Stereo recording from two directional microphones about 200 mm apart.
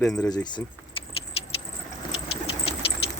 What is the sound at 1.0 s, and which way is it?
Rodents, 25° left (ahead or behind).